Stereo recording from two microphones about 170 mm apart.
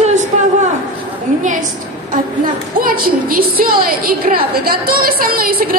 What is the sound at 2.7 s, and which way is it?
A woman's voice, 60° right (ahead or behind).